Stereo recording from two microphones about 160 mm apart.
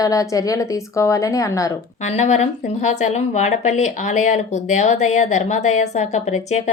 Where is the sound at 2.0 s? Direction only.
45° left (ahead or behind).